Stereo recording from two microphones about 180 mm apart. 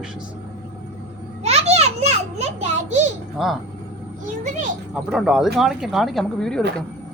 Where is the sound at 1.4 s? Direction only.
35° right (ahead or behind).